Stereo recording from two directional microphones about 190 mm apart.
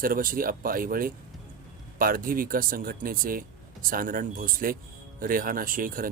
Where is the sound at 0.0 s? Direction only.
50° right (ahead or behind).